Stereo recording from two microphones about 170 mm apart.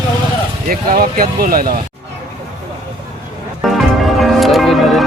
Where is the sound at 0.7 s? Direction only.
60° right (ahead or behind).